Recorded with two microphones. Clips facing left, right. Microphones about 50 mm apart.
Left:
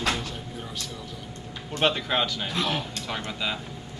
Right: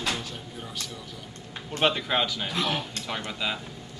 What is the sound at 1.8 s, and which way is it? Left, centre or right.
Speech, centre.